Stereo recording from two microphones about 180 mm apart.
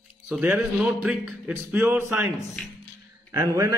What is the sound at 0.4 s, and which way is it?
Speech, 5° right (ahead or behind).